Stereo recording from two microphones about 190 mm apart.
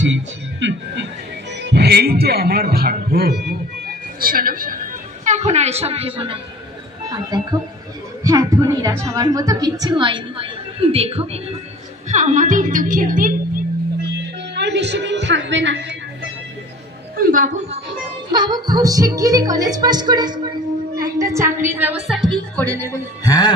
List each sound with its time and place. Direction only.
0.0 s speech: 70° right (ahead or behind)
1.6 s a man's voice: 60° right (ahead or behind)
5.2 s a woman's voice: 35° right (ahead or behind)
14.5 s a woman's voice: 65° right (ahead or behind)
17.2 s a woman's voice: 45° right (ahead or behind)
18.3 s a woman's voice: 20° right (ahead or behind); by 22.7 s centre (ahead or behind)
22.8 s a man's voice: 15° left (ahead or behind)